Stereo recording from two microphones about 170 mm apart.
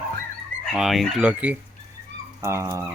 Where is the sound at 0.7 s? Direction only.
Centre (ahead or behind).